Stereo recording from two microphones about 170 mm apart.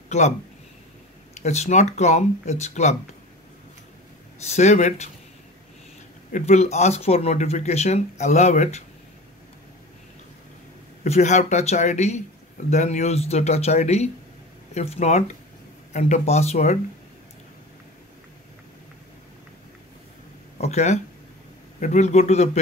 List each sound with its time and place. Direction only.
1.3 s speech: 40° left (ahead or behind)
4.4 s speech: 40° left (ahead or behind)
6.3 s speech: 40° left (ahead or behind)
11.1 s speech: 45° left (ahead or behind)
20.5 s a sound: 40° left (ahead or behind)
21.7 s speech: 45° left (ahead or behind)